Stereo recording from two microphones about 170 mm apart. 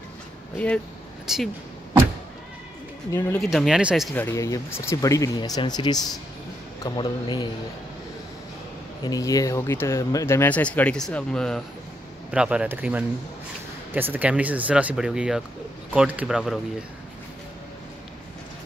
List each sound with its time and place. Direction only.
1.2 s speech: centre (ahead or behind)
3.1 s speech: 15° left (ahead or behind)
3.3 s speech: centre (ahead or behind)
4.1 s speech: 15° left (ahead or behind)
9.0 s speech: 20° left (ahead or behind); by 16.5 s 5° right (ahead or behind)